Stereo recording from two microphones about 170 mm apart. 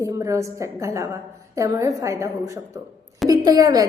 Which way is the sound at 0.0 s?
20° right (ahead or behind).